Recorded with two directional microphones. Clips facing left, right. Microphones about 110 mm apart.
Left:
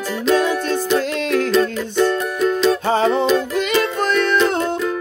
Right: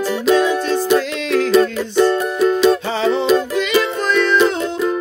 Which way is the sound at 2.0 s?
10° right (ahead or behind).